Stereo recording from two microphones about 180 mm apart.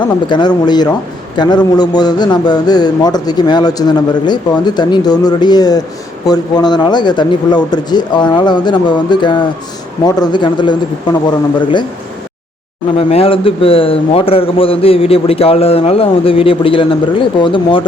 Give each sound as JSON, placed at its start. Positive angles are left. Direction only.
{"t": 0.3, "sound": "a man's voice", "side_deg": 25}
{"t": 13.0, "sound": "a man's voice", "side_deg": 35}